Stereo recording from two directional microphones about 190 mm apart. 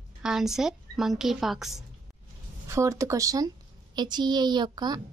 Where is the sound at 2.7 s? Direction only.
15° right (ahead or behind).